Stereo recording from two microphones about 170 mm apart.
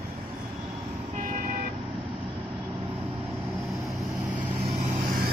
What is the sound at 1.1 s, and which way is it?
Vehicle, 55° right (ahead or behind).